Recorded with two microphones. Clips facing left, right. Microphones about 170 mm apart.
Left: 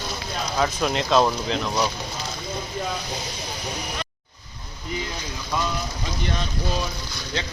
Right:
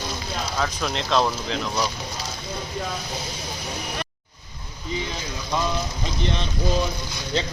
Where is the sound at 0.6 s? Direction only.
5° left (ahead or behind).